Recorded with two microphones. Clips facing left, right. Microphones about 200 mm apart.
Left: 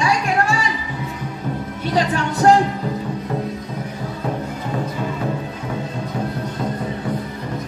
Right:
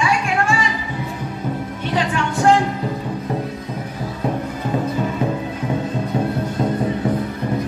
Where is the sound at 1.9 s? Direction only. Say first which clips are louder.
Left 2 dB; 40° left (ahead or behind).